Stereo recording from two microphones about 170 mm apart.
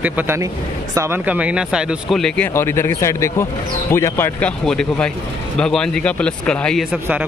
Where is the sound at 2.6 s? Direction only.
15° left (ahead or behind).